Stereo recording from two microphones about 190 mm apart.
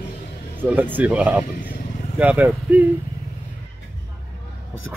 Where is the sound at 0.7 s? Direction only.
10° right (ahead or behind).